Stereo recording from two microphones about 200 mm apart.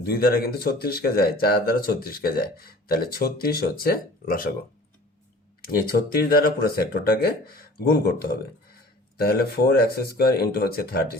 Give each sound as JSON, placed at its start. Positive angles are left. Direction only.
{"t": 0.0, "sound": "speech", "side_deg": 50}
{"t": 5.6, "sound": "speech", "side_deg": 50}
{"t": 9.1, "sound": "speech", "side_deg": 50}